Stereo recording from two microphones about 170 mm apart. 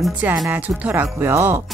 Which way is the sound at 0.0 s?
5° right (ahead or behind).